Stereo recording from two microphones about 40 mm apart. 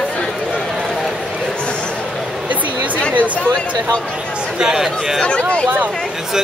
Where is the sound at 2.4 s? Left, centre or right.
Right.